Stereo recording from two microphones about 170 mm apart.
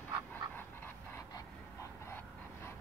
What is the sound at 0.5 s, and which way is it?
Dog, 10° left (ahead or behind).